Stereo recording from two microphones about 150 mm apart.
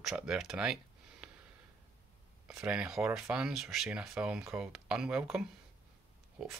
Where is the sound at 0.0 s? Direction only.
5° right (ahead or behind).